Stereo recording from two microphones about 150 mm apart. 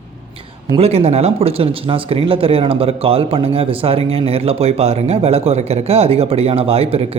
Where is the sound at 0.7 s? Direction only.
45° right (ahead or behind).